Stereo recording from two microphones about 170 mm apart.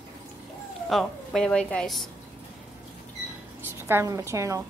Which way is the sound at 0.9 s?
5° left (ahead or behind).